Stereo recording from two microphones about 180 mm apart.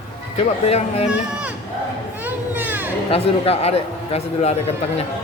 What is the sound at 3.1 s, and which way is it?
Speech, 35° left (ahead or behind).